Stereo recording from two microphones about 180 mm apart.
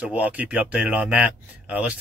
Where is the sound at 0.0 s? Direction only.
5° right (ahead or behind).